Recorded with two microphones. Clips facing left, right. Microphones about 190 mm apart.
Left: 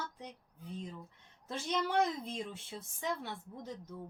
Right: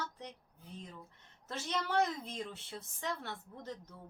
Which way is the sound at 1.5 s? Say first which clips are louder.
Left 2 dB; 10° left (ahead or behind).